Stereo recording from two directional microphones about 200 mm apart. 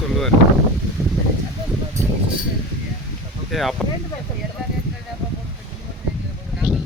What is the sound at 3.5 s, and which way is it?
Speech, centre (ahead or behind).